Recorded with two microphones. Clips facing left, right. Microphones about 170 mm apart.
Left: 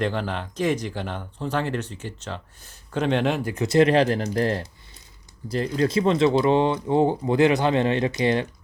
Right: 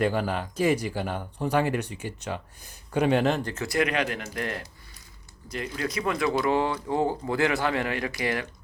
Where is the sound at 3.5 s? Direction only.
20° left (ahead or behind).